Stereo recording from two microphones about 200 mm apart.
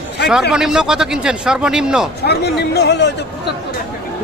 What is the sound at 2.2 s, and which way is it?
Speech, 55° left (ahead or behind).